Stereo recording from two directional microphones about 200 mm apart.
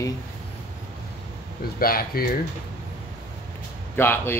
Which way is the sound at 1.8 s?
50° left (ahead or behind).